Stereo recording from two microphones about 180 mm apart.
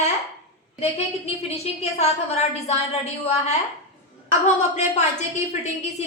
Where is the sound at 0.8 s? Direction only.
35° left (ahead or behind).